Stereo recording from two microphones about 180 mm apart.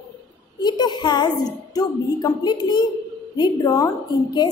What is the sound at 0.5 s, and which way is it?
A woman's voice, 25° left (ahead or behind).